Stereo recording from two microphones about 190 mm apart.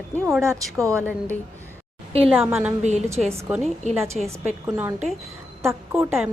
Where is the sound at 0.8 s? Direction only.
15° right (ahead or behind).